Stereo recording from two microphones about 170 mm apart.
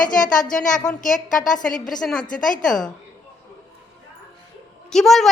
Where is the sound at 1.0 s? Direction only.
50° left (ahead or behind).